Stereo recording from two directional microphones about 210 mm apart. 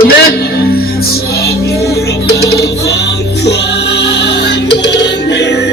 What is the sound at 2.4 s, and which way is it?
Music, 50° left (ahead or behind).